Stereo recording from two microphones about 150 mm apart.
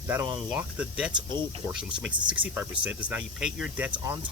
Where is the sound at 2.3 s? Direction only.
10° right (ahead or behind).